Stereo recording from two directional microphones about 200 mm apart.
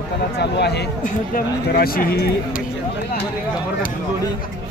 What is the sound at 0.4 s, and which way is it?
A man's voice, 55° left (ahead or behind).